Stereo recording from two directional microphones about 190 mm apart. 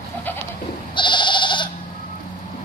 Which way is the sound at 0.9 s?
25° left (ahead or behind).